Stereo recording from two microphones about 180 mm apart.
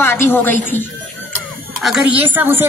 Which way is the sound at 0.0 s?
10° left (ahead or behind).